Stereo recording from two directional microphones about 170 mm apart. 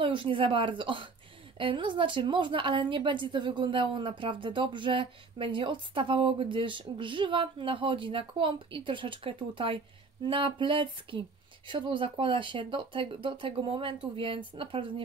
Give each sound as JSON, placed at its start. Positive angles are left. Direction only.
{"t": 0.0, "sound": "a woman's voice", "side_deg": -30}